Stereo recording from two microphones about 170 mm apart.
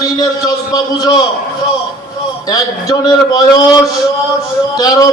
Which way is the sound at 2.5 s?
20° left (ahead or behind).